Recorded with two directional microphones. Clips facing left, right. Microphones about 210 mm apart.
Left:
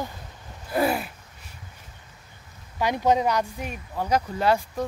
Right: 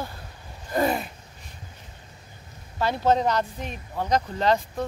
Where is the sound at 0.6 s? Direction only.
10° left (ahead or behind).